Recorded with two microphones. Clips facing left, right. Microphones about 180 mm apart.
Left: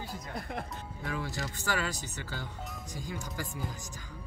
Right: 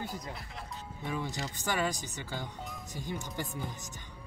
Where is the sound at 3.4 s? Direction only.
Centre (ahead or behind).